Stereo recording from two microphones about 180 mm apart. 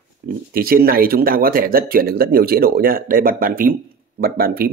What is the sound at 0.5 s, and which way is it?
Speech, 55° right (ahead or behind).